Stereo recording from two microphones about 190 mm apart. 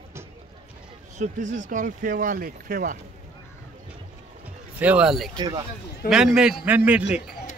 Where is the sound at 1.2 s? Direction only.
40° right (ahead or behind).